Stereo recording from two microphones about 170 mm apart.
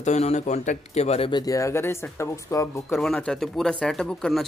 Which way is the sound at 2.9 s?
Centre (ahead or behind).